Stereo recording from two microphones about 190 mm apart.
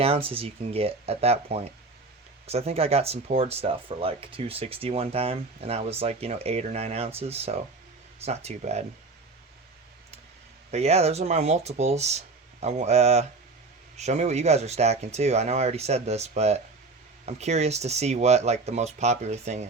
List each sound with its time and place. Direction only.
0.0 s speech: 30° right (ahead or behind)
10.7 s speech: 35° right (ahead or behind)